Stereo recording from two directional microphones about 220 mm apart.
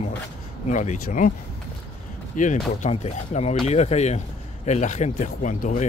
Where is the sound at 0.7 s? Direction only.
35° left (ahead or behind).